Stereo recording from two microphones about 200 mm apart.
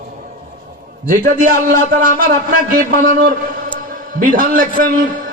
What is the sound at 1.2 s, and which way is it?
A man's voice, 45° right (ahead or behind).